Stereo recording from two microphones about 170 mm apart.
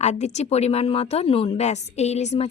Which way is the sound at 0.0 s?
40° left (ahead or behind).